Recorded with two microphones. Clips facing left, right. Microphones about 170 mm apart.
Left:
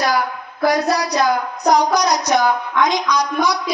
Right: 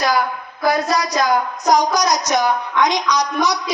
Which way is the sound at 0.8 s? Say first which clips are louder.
Left 1 dB; 65° left (ahead or behind).